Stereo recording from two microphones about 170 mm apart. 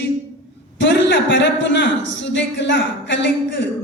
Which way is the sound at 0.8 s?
90° left.